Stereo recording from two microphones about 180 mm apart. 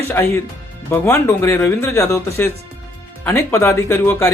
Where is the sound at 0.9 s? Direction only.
10° left (ahead or behind).